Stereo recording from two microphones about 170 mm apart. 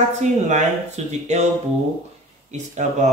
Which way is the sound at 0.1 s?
45° right (ahead or behind).